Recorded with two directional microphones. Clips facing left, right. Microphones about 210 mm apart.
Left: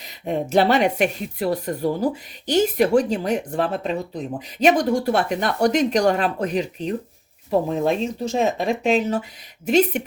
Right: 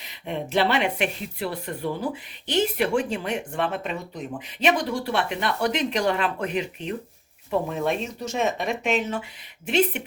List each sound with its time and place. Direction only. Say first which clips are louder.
0.0 s speech: left 6 dB; 40° left (ahead or behind)